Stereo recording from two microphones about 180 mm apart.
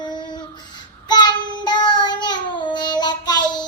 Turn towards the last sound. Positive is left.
turn(degrees=25)  # may be behind; listen again after turning